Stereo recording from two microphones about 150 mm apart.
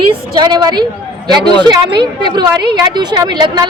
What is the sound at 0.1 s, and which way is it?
Speech, 30° right (ahead or behind).